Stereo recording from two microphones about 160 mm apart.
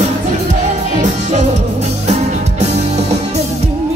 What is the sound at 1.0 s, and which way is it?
Music, 45° right (ahead or behind).